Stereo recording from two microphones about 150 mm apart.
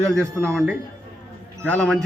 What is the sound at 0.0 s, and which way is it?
A man's voice, 5° left (ahead or behind).